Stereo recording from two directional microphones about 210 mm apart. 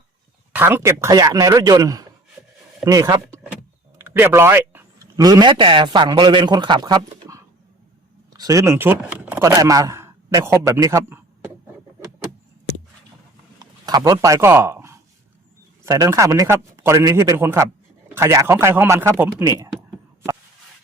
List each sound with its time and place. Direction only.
0.5 s a man's voice: 10° right (ahead or behind)
13.6 s a man's voice: 20° right (ahead or behind)